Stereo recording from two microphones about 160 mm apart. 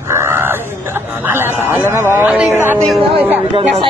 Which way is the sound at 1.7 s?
15° right (ahead or behind).